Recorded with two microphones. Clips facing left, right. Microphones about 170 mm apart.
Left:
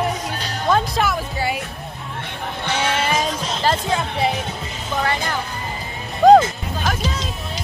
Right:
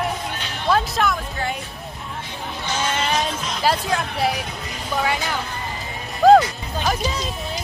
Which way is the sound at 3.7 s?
Centre (ahead or behind).